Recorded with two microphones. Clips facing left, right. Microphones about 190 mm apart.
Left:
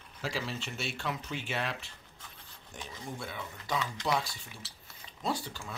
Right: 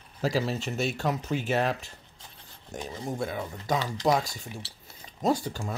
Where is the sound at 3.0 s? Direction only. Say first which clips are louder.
Right 9 dB; 45° right (ahead or behind).